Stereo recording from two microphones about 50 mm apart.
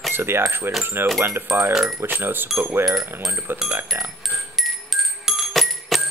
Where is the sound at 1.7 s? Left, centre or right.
Centre.